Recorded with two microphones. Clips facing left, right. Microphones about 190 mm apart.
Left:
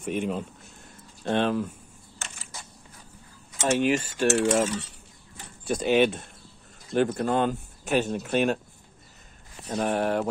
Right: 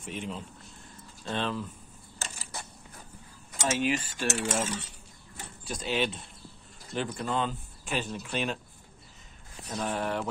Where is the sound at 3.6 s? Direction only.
45° left (ahead or behind).